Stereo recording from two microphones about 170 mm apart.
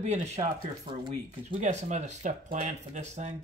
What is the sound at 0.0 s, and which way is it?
Speech, 40° right (ahead or behind).